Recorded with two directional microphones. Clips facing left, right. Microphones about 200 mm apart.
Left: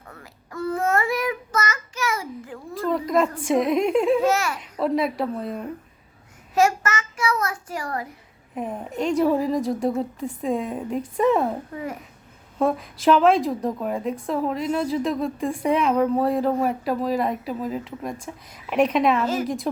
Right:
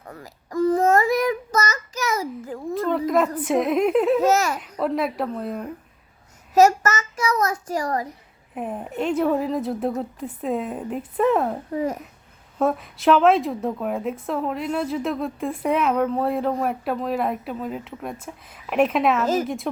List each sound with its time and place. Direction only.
0.1 s child singing: 35° right (ahead or behind)
2.8 s a woman's voice: centre (ahead or behind)
4.2 s a child's voice: 40° right (ahead or behind)
4.6 s a woman's voice: centre (ahead or behind)
6.5 s a child's voice: 40° right (ahead or behind)
8.5 s a woman's voice: 5° right (ahead or behind)
11.7 s a child's voice: 35° right (ahead or behind)
12.5 s a woman's voice: centre (ahead or behind)